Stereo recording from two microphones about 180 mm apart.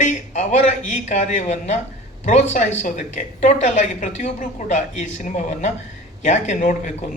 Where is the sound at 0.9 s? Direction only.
40° left (ahead or behind).